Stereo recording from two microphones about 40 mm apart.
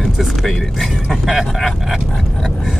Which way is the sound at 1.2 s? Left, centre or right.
Centre.